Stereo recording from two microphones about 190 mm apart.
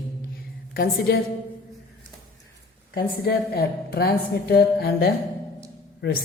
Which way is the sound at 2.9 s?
55° left (ahead or behind).